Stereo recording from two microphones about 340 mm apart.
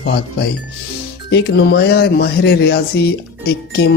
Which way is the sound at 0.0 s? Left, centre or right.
Left.